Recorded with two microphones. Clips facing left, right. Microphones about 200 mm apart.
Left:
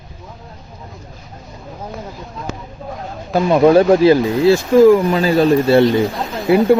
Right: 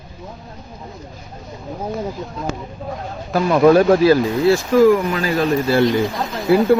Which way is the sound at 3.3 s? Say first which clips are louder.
Left 2 dB; 20° left (ahead or behind).